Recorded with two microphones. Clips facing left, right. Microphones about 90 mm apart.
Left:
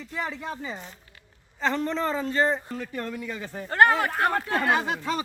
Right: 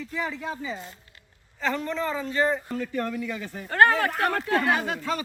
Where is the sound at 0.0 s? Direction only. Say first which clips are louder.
Right 1 dB; 35° left (ahead or behind).